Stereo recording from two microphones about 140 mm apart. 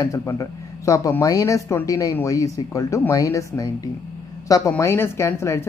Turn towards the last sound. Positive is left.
turn(degrees=20)  # may be behind; listen again after turning